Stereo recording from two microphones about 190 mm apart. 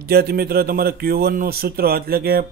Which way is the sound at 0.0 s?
55° right (ahead or behind).